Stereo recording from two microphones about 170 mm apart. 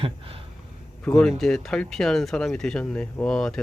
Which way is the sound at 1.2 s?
Centre (ahead or behind).